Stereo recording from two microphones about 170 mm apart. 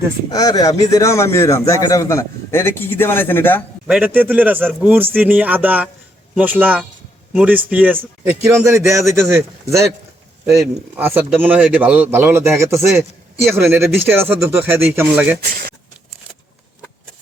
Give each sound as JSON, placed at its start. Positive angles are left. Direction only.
{"t": 0.3, "sound": "speech", "side_deg": 20}
{"t": 3.8, "sound": "a man's voice", "side_deg": -5}
{"t": 10.6, "sound": "a man's voice", "side_deg": -10}
{"t": 15.4, "sound": "speech", "side_deg": -60}